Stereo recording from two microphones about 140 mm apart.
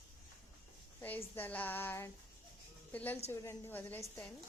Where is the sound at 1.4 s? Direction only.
10° left (ahead or behind).